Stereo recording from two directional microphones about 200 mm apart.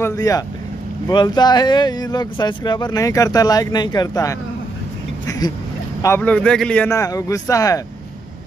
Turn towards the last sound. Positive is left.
turn(degrees=15)  # may be behind; listen again after turning